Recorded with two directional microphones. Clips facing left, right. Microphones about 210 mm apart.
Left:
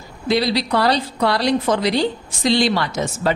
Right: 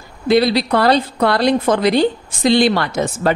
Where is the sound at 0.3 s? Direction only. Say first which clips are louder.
Right 5 dB; 55° right (ahead or behind).